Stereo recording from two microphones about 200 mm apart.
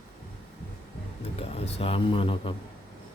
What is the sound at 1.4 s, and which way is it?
A man's voice, 30° left (ahead or behind).